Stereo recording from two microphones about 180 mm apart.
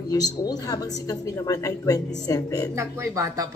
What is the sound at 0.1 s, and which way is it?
A woman's voice, 20° left (ahead or behind).